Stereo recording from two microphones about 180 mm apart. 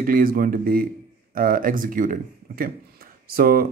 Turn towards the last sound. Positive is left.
turn(degrees=-55)  # may be behind; listen again after turning